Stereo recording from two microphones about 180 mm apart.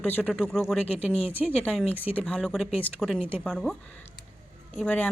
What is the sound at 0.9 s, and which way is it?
Speech, 35° left (ahead or behind).